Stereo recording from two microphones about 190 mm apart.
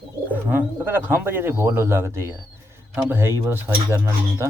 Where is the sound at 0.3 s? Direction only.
10° right (ahead or behind).